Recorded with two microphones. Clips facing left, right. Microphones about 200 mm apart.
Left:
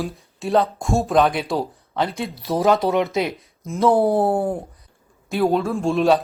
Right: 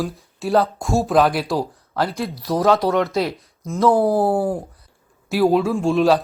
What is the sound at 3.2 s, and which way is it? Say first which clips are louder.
Speech: right 1 dB; 20° left (ahead or behind).